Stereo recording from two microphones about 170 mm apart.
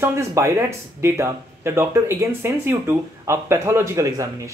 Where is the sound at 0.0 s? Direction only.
15° right (ahead or behind).